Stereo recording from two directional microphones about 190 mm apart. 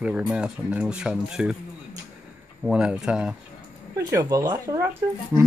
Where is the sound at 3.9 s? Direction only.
20° right (ahead or behind).